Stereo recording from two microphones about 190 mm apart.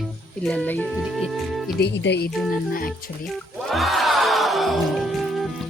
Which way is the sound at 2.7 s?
50° left (ahead or behind).